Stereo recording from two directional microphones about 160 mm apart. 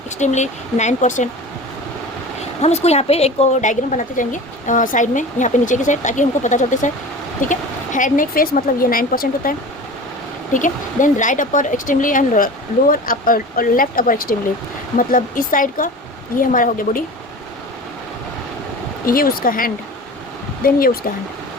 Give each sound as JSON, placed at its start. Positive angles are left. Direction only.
{"t": 0.2, "sound": "speech", "side_deg": 45}
{"t": 2.4, "sound": "speech", "side_deg": 45}
{"t": 19.0, "sound": "speech", "side_deg": 65}